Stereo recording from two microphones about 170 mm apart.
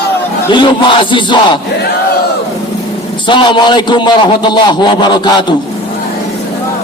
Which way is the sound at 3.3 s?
25° left (ahead or behind).